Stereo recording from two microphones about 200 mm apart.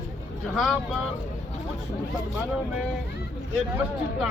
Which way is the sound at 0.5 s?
Centre (ahead or behind).